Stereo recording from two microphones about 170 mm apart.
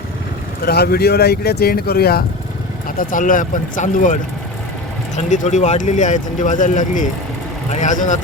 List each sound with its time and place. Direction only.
0.6 s speech: 65° left (ahead or behind)
3.0 s speech: 50° left (ahead or behind)